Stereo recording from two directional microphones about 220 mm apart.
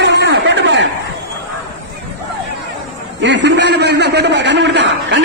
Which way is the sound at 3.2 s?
50° right (ahead or behind).